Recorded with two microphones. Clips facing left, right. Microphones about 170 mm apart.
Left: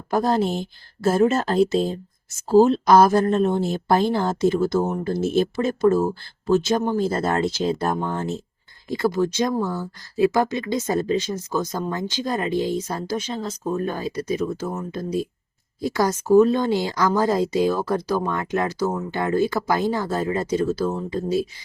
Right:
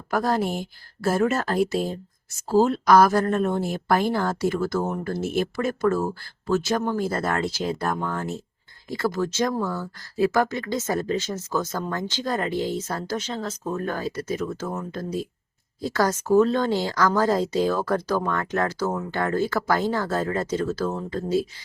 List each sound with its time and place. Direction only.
0.1 s speech: 25° left (ahead or behind)